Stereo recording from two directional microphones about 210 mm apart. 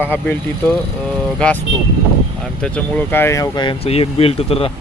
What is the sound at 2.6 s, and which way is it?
Speech, 5° left (ahead or behind).